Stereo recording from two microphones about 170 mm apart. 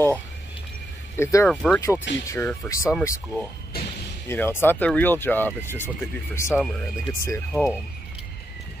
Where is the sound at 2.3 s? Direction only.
15° left (ahead or behind).